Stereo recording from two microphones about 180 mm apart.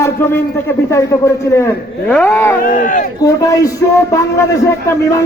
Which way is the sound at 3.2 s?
20° left (ahead or behind).